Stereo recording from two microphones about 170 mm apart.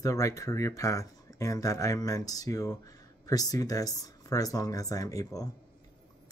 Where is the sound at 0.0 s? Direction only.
20° left (ahead or behind).